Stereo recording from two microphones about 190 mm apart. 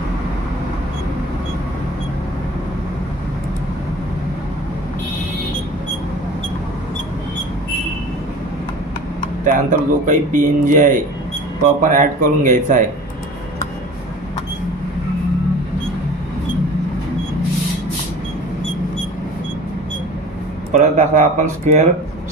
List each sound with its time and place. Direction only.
9.4 s speech: 45° right (ahead or behind)
20.7 s speech: 40° right (ahead or behind)